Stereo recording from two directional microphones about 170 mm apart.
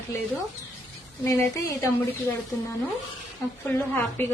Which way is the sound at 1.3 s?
15° left (ahead or behind).